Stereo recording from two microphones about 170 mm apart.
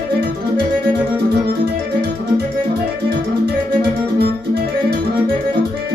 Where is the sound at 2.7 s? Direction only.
70° right (ahead or behind).